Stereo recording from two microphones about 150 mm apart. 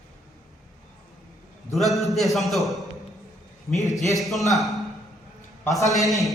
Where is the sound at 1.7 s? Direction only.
Centre (ahead or behind).